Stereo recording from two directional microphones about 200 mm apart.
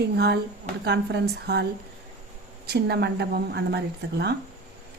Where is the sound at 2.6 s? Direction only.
55° right (ahead or behind).